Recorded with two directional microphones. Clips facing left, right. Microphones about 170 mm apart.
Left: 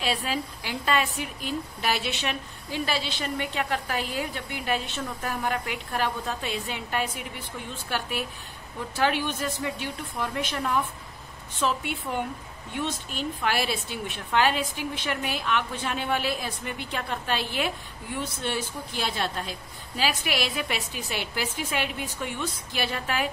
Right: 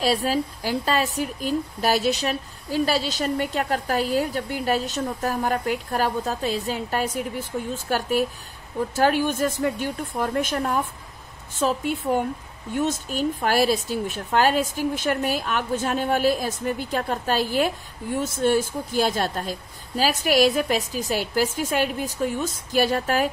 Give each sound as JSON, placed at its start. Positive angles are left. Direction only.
{"t": 0.0, "sound": "a woman's voice", "side_deg": -40}